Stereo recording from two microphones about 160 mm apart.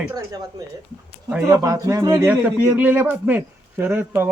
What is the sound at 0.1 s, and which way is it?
A man's voice, 20° right (ahead or behind).